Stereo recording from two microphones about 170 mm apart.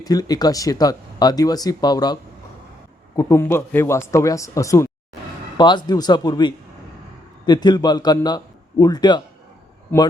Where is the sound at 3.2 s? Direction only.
15° left (ahead or behind).